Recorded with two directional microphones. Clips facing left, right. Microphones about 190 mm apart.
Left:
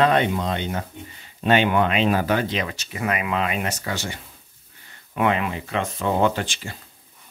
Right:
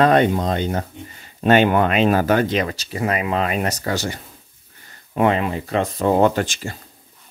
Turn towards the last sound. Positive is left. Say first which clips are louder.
# right 4 dB
turn(degrees=-45)  # may be behind; listen again after turning